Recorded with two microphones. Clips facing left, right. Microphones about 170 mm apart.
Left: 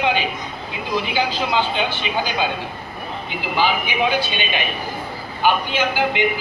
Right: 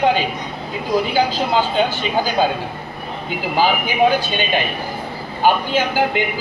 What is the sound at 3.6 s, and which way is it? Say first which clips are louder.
A man's voice: right 4 dB; 45° right (ahead or behind).